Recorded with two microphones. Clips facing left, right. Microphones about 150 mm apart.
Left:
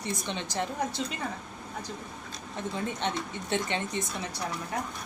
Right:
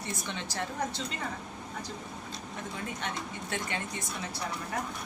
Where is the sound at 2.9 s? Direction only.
25° left (ahead or behind).